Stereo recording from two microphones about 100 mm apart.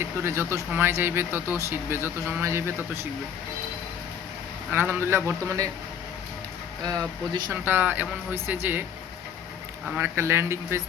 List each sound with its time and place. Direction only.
0.0 s speech: 25° right (ahead or behind)
4.7 s speech: 20° right (ahead or behind)
7.5 s speech: 20° right (ahead or behind)
10.0 s speech: 25° right (ahead or behind)